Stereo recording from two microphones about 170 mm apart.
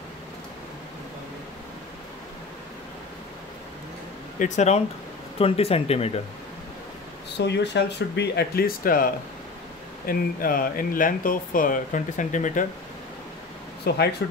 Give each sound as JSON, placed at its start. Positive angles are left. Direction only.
{"t": 4.4, "sound": "speech", "side_deg": 40}
{"t": 7.3, "sound": "speech", "side_deg": 90}
{"t": 13.8, "sound": "speech", "side_deg": 70}